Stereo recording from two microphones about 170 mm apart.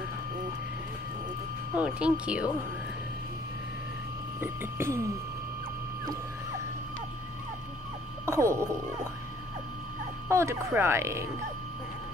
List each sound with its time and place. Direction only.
1.8 s speech: 5° right (ahead or behind)
4.4 s speech: 15° right (ahead or behind)
8.3 s speech: 15° right (ahead or behind)
10.2 s speech: 15° right (ahead or behind)